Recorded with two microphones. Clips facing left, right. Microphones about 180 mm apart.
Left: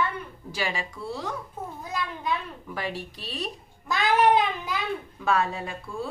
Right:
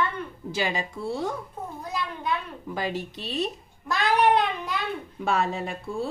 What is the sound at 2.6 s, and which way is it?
Speech, 25° right (ahead or behind).